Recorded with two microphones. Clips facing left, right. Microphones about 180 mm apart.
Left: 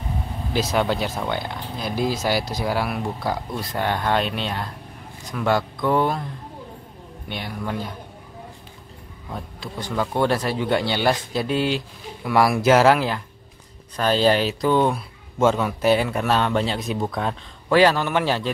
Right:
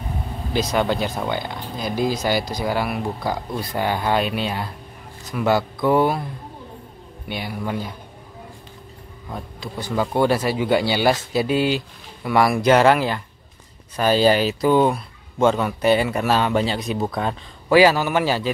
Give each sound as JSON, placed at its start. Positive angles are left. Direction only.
{"t": 0.5, "sound": "speech", "side_deg": 0}
{"t": 7.2, "sound": "speech", "side_deg": -5}
{"t": 9.3, "sound": "speech", "side_deg": 0}